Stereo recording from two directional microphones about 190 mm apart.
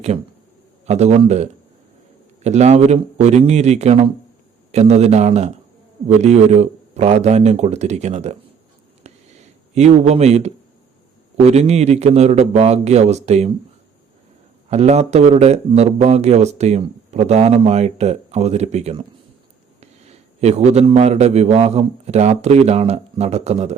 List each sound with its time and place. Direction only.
0.9 s a man's voice: 35° right (ahead or behind)
9.7 s a man's voice: 35° right (ahead or behind)
14.7 s a man's voice: 35° right (ahead or behind)